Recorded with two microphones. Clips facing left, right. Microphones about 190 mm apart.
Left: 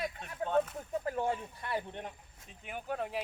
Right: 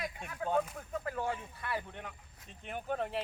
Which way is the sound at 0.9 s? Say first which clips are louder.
Left 3 dB; 25° left (ahead or behind).